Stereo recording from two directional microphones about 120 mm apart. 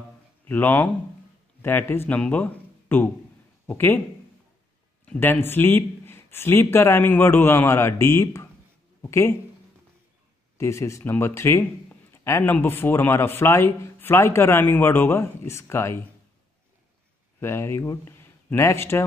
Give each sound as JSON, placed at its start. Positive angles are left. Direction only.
{"t": 0.5, "sound": "speech", "side_deg": 15}
{"t": 5.0, "sound": "speech", "side_deg": 15}
{"t": 10.6, "sound": "a man's voice", "side_deg": 25}
{"t": 17.4, "sound": "speech", "side_deg": 20}